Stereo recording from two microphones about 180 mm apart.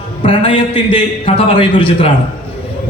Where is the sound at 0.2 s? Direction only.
30° left (ahead or behind).